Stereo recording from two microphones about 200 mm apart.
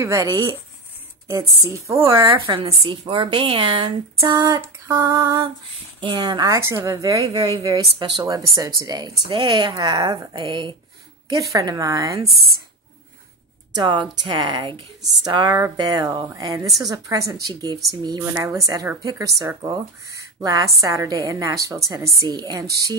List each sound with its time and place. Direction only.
0.0 s speech: 15° right (ahead or behind)
1.9 s a woman's voice: 15° right (ahead or behind)
13.7 s a woman's voice: 25° right (ahead or behind)
16.6 s a woman's voice: centre (ahead or behind)
17.3 s a woman's voice: 20° right (ahead or behind)